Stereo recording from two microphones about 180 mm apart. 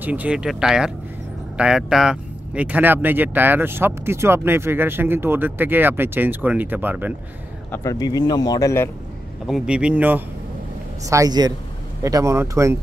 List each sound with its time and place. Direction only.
0.0 s speech: 10° right (ahead or behind)
7.7 s speech: 15° left (ahead or behind)
9.5 s speech: 5° right (ahead or behind)
11.1 s a man's voice: 20° right (ahead or behind)